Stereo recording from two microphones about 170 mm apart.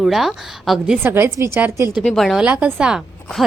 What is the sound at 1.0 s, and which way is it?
Speech, 15° right (ahead or behind).